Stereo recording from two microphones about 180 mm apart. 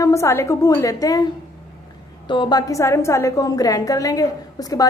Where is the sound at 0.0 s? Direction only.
15° left (ahead or behind).